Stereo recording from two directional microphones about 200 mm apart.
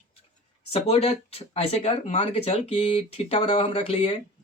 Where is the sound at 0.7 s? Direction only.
30° left (ahead or behind).